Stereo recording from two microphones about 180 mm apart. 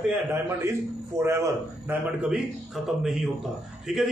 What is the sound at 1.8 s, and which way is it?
A man's voice, 5° right (ahead or behind).